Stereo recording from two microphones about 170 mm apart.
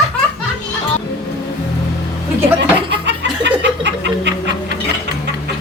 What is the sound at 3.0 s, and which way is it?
Music, 90° right.